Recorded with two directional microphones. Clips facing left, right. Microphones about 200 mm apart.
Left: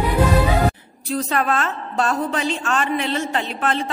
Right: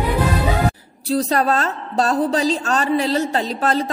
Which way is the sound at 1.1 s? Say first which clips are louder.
Right 3 dB; 35° right (ahead or behind).